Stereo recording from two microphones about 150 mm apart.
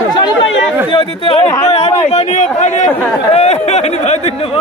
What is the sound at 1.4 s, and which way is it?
Speech, 20° left (ahead or behind).